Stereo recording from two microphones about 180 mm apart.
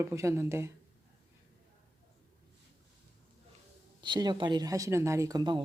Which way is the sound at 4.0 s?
25° right (ahead or behind).